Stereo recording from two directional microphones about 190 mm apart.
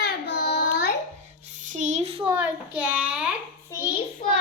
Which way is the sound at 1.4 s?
40° right (ahead or behind).